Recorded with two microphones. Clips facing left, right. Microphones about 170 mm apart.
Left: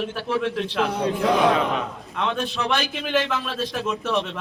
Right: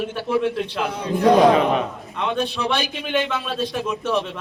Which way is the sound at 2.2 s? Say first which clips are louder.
Right 2 dB; 10° right (ahead or behind).